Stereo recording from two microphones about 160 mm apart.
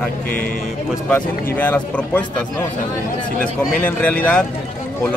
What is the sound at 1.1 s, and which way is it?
Speech, 10° left (ahead or behind).